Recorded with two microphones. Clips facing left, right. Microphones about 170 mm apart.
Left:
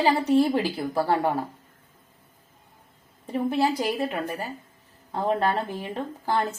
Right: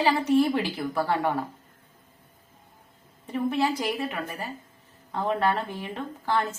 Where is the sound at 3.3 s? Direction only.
35° left (ahead or behind).